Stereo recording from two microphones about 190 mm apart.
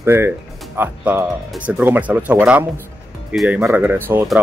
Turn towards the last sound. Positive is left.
turn(degrees=-10)  # may be behind; listen again after turning